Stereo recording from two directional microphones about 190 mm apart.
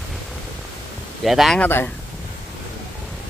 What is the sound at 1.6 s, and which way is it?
Speech, 10° left (ahead or behind).